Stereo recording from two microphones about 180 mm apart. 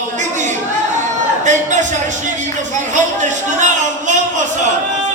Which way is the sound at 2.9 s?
45° right (ahead or behind).